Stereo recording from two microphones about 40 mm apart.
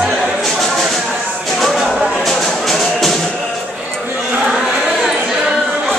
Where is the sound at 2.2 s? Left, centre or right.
Centre.